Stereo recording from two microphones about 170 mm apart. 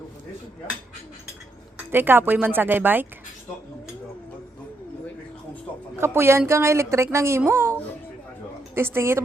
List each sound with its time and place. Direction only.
1.9 s a woman's voice: 10° right (ahead or behind)
6.0 s a woman's voice: 15° right (ahead or behind)